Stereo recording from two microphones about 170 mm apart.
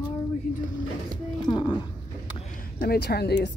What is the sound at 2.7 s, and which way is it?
Speech, 65° left (ahead or behind).